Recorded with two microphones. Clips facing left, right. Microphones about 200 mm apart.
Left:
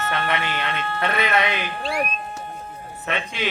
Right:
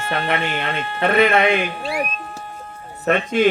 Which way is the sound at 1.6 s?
5° right (ahead or behind).